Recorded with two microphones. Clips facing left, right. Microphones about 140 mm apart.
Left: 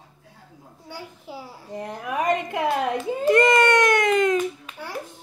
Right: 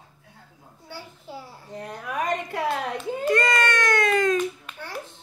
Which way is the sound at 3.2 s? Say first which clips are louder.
Left 5 dB; 20° left (ahead or behind).